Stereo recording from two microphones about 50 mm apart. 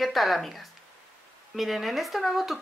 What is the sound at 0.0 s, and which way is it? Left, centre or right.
Speech, centre.